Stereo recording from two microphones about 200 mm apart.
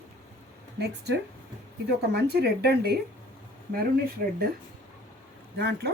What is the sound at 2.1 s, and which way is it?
Speech, 55° right (ahead or behind).